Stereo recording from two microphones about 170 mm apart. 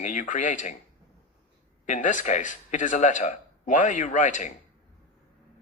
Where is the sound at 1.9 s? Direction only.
50° left (ahead or behind).